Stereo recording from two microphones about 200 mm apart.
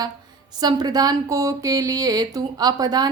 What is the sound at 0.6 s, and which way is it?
A woman's voice, 20° right (ahead or behind).